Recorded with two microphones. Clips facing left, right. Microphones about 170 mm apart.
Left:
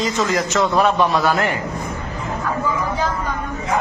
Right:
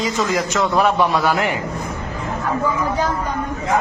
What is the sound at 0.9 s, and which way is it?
Speech, 10° right (ahead or behind).